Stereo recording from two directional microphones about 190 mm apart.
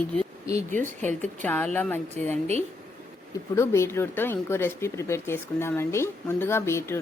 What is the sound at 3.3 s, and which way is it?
Speech, 15° left (ahead or behind).